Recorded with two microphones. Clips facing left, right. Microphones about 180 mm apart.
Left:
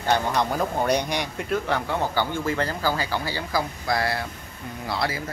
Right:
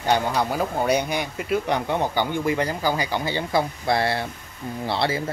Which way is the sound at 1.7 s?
20° right (ahead or behind).